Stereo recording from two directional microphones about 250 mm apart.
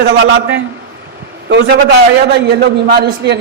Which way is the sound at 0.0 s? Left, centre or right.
Right.